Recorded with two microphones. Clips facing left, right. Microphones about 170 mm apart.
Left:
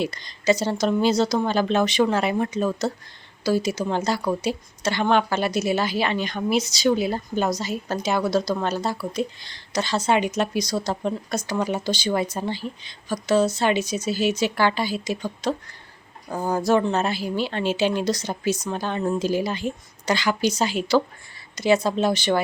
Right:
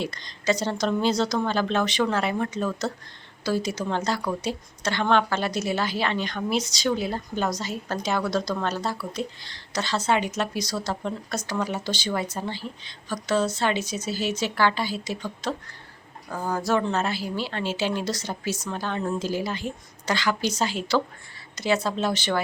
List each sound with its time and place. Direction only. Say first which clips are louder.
0.0 s speech: left 4 dB; 10° left (ahead or behind)